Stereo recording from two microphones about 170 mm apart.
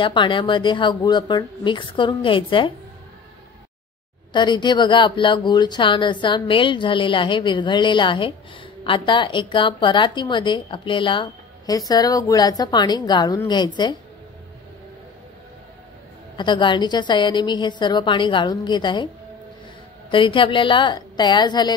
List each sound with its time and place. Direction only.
0.0 s a woman's voice: 30° left (ahead or behind)
4.3 s a woman's voice: 25° left (ahead or behind)
16.3 s a woman's voice: 30° left (ahead or behind)
20.1 s a woman's voice: 30° left (ahead or behind)